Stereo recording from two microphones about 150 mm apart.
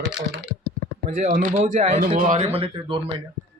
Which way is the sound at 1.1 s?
65° right (ahead or behind).